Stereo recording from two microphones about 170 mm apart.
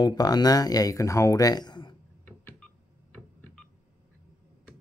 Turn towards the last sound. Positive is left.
turn(degrees=5)  # may be behind; listen again after turning